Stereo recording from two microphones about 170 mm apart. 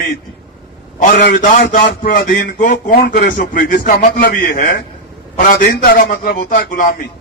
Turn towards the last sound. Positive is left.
turn(degrees=55)  # may be behind; listen again after turning